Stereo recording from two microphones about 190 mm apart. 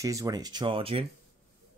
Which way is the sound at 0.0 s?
15° right (ahead or behind).